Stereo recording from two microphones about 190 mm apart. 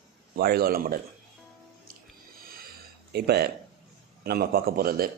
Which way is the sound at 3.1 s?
55° right (ahead or behind).